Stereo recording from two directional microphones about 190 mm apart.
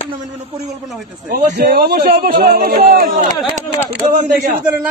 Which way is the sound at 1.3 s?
55° right (ahead or behind).